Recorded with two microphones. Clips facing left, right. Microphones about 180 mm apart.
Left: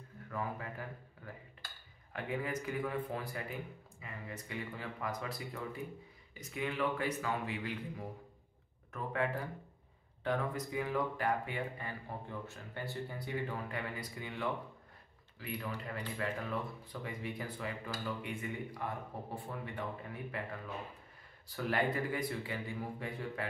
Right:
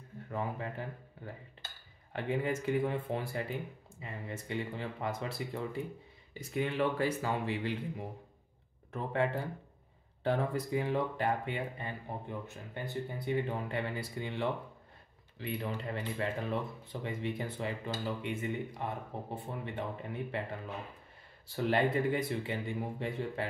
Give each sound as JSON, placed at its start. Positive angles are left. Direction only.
{"t": 0.3, "sound": "dishes", "side_deg": -25}
{"t": 2.1, "sound": "speech", "side_deg": -25}
{"t": 21.5, "sound": "speech", "side_deg": -25}